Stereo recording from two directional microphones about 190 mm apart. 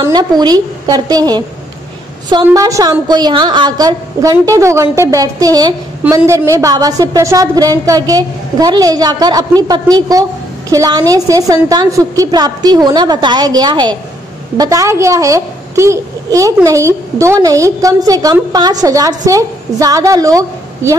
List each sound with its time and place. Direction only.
0.0 s a woman's voice: 20° right (ahead or behind)